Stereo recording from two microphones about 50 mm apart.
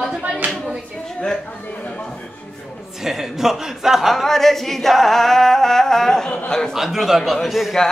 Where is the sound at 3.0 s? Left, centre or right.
Centre.